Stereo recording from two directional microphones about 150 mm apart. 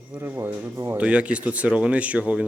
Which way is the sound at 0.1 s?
15° right (ahead or behind).